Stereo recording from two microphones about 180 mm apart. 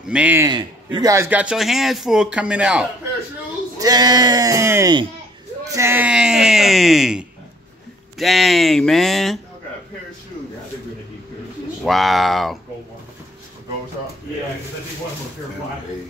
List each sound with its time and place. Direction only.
0.1 s a man's voice: 10° right (ahead or behind)
3.8 s speech: 20° right (ahead or behind); by 9.4 s centre (ahead or behind)
11.8 s speech: centre (ahead or behind)